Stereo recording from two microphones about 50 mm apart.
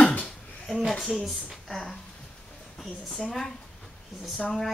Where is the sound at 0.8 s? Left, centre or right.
Centre.